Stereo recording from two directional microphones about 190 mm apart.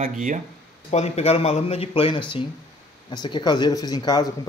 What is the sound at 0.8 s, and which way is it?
Speech, 35° left (ahead or behind).